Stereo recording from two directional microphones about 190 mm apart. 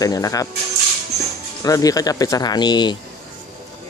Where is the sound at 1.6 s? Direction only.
20° left (ahead or behind).